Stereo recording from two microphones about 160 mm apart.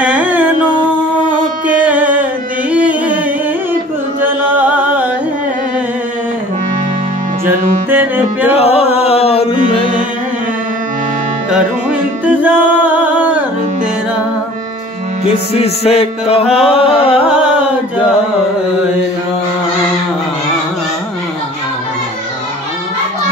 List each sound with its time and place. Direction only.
0.0 s music: 10° right (ahead or behind)
1.7 s music: 10° right (ahead or behind)
4.6 s music: 10° right (ahead or behind)
7.4 s music: 10° right (ahead or behind)
8.5 s music: 40° left (ahead or behind)
9.6 s music: 50° right (ahead or behind)
12.3 s music: 10° right (ahead or behind)
15.2 s music: 40° left (ahead or behind)